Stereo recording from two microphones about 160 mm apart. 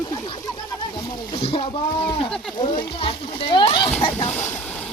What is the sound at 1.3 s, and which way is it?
Speech, 35° left (ahead or behind).